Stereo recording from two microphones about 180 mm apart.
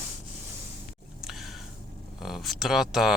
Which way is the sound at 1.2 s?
Centre (ahead or behind).